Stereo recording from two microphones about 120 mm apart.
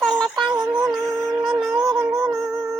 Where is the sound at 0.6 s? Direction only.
30° right (ahead or behind).